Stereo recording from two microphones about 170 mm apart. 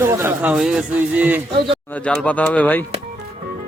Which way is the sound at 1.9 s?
5° left (ahead or behind).